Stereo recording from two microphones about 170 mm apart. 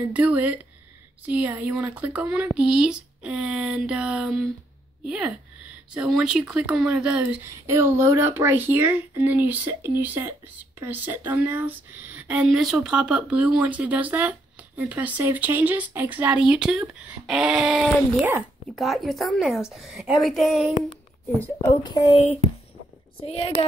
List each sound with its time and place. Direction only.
0.1 s a woman's voice: 10° right (ahead or behind)
21.4 s speech: 15° left (ahead or behind)
22.1 s speech: 40° left (ahead or behind)